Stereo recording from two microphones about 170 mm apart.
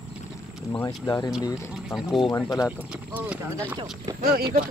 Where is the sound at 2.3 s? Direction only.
20° left (ahead or behind).